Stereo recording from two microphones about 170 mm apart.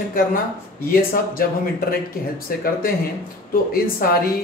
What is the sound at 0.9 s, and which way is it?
Speech, 60° left (ahead or behind).